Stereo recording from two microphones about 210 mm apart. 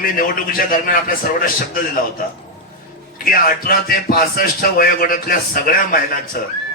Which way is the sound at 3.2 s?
45° left (ahead or behind).